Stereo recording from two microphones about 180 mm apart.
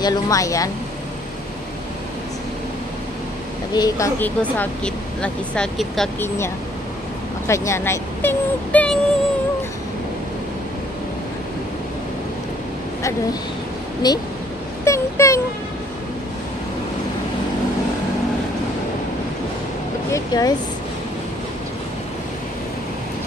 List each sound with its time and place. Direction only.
0.0 s speech: 20° left (ahead or behind)
3.7 s speech: 20° left (ahead or behind)
4.2 s speech: 10° left (ahead or behind)
6.2 s speech: 15° left (ahead or behind)
14.0 s speech: 20° left (ahead or behind)
20.1 s speech: 20° left (ahead or behind)